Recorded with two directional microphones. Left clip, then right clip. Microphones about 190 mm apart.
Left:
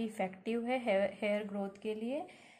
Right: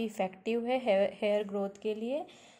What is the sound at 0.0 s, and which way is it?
A woman's voice, 35° right (ahead or behind).